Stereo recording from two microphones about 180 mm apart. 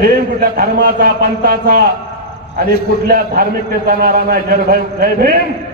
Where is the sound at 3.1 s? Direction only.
55° right (ahead or behind).